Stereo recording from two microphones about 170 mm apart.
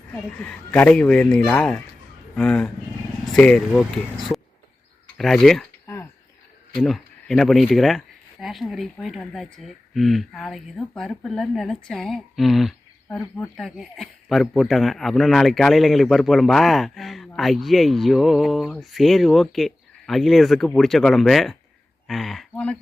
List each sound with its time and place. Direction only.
0.1 s a man's voice: 10° left (ahead or behind)
5.8 s chop: 15° left (ahead or behind)
6.7 s a man's voice: centre (ahead or behind)
13.6 s a man's voice: centre (ahead or behind)